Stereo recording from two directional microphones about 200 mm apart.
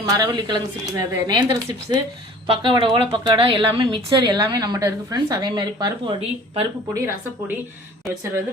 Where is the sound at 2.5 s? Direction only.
25° right (ahead or behind).